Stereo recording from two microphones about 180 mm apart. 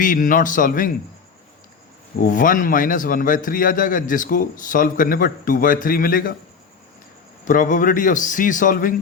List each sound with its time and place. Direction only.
0.0 s a man's voice: 50° left (ahead or behind)
2.2 s a man's voice: 50° left (ahead or behind)
7.4 s a man's voice: 45° left (ahead or behind)